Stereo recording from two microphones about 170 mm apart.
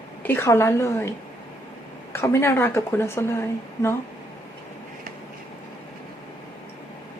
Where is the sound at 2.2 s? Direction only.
15° left (ahead or behind).